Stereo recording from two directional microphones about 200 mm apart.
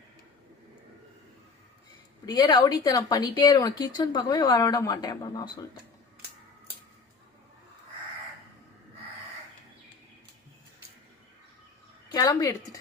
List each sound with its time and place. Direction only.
2.2 s speech: 20° left (ahead or behind)
12.0 s a woman's voice: 15° left (ahead or behind)